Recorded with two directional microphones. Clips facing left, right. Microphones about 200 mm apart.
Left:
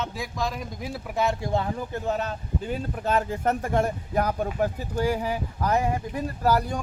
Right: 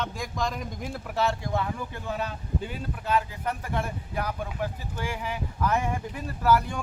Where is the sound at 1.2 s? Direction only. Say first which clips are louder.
Left 4 dB; 30° left (ahead or behind).